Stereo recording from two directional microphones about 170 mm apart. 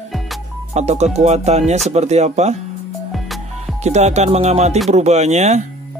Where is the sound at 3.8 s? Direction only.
40° right (ahead or behind).